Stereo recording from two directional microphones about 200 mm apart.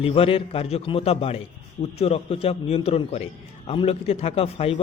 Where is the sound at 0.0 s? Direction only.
30° left (ahead or behind).